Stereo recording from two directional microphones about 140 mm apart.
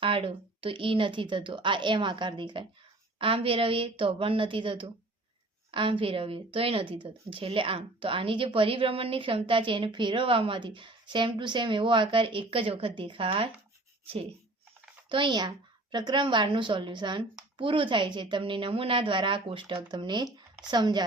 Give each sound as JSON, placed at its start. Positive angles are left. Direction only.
{"t": 0.0, "sound": "a woman's voice", "side_deg": -40}
{"t": 15.1, "sound": "a woman's voice", "side_deg": -35}